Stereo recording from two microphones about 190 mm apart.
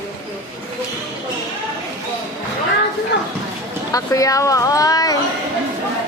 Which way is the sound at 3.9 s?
20° left (ahead or behind).